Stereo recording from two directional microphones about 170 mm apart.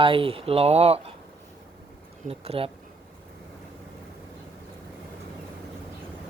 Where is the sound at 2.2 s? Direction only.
35° right (ahead or behind).